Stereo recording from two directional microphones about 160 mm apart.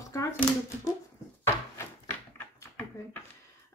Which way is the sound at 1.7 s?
15° left (ahead or behind).